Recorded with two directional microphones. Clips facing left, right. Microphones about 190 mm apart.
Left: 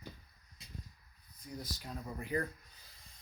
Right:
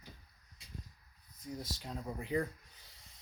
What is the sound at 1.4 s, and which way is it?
Speech, 25° right (ahead or behind).